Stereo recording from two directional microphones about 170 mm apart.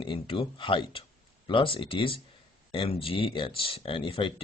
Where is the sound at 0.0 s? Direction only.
30° left (ahead or behind).